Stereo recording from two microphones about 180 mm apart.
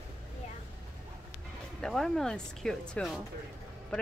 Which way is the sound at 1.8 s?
Centre (ahead or behind).